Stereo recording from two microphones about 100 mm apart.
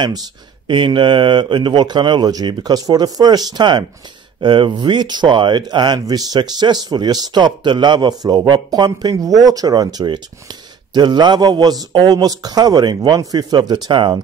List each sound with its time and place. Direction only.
0.7 s speech: 55° right (ahead or behind)